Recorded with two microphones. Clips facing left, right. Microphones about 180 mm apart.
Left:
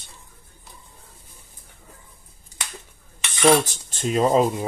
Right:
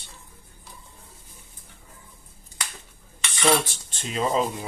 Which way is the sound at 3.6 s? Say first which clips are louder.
Left 10 dB; 45° left (ahead or behind).